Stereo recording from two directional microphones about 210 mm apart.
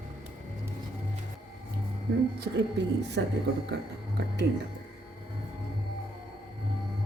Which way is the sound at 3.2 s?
55° right (ahead or behind).